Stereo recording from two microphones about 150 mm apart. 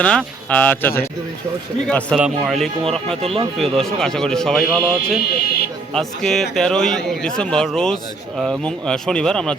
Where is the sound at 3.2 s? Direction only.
35° right (ahead or behind).